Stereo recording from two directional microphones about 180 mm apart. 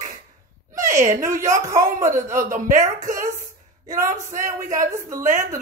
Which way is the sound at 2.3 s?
45° right (ahead or behind).